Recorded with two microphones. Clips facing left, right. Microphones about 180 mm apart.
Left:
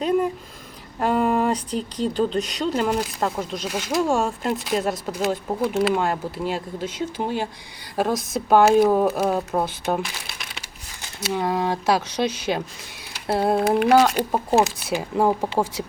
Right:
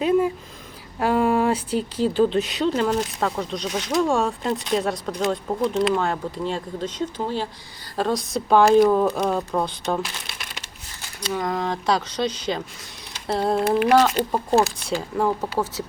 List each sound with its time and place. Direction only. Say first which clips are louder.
0.9 s speech: right 1 dB; centre (ahead or behind)
10.0 s crumpling: even; centre (ahead or behind)
11.4 s speech: left 2 dB; 10° left (ahead or behind)
14.3 s speech: left 1 dB; 20° left (ahead or behind)